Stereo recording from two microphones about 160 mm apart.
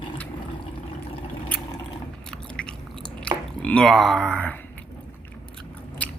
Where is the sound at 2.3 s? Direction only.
5° left (ahead or behind).